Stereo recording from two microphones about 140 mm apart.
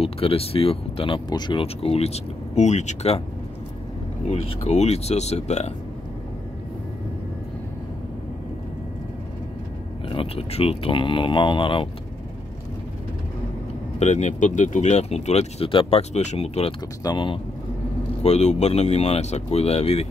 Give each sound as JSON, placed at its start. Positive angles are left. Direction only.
{"t": 0.0, "sound": "speech", "side_deg": 45}
{"t": 4.3, "sound": "speech", "side_deg": 50}
{"t": 10.0, "sound": "speech", "side_deg": 40}
{"t": 13.9, "sound": "speech", "side_deg": 55}
{"t": 17.0, "sound": "speech", "side_deg": 35}
{"t": 18.2, "sound": "speech", "side_deg": 50}